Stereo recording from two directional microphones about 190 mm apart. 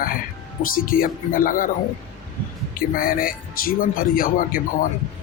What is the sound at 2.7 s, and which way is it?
Speech, 50° left (ahead or behind).